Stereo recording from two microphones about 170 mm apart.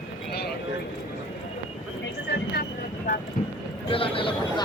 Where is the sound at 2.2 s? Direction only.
70° left (ahead or behind).